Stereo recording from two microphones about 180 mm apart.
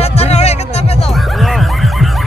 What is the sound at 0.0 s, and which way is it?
Music, 35° left (ahead or behind).